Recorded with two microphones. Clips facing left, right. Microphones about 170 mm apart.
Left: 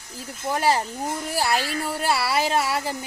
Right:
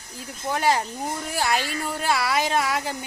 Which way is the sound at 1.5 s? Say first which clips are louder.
Right 1 dB; 35° left (ahead or behind).